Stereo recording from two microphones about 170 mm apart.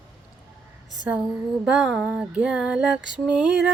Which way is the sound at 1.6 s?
5° right (ahead or behind).